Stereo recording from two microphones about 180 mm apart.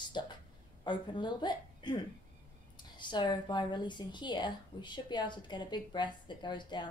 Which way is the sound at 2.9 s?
25° left (ahead or behind).